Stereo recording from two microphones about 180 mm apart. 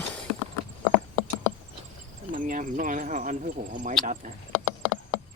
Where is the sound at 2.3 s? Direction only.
45° right (ahead or behind).